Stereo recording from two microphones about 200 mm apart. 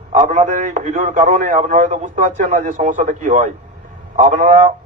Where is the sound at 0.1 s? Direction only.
35° right (ahead or behind).